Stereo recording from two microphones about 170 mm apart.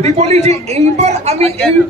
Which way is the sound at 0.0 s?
40° right (ahead or behind).